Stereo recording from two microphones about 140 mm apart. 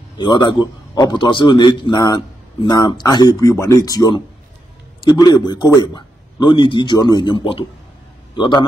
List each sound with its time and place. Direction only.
0.2 s a man's voice: 30° left (ahead or behind)